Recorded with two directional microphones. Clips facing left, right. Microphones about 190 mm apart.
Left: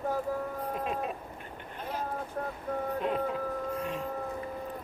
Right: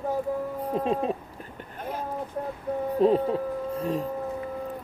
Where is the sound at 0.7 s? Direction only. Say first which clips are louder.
Right 11 dB; 30° right (ahead or behind).